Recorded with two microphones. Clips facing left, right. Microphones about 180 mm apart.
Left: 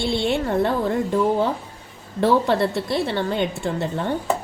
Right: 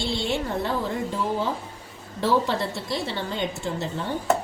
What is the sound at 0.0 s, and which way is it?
Speech, 55° left (ahead or behind).